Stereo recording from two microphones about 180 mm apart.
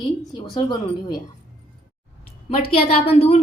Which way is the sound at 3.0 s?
35° left (ahead or behind).